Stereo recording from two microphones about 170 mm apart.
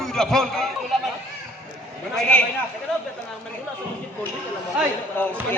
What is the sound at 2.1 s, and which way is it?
Speech, 5° left (ahead or behind).